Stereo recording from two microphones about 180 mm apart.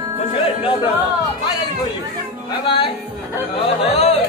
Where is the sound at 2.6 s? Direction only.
30° left (ahead or behind).